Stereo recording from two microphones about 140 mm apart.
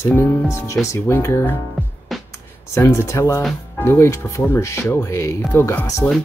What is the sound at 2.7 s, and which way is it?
Speech, 20° left (ahead or behind).